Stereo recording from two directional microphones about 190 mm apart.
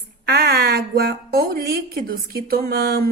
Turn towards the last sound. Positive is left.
turn(degrees=-55)  # may be behind; listen again after turning